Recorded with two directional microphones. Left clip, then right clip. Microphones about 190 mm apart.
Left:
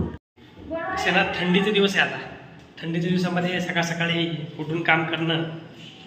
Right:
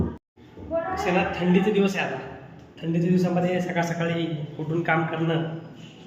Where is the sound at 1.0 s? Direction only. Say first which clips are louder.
Left 6 dB; 5° right (ahead or behind).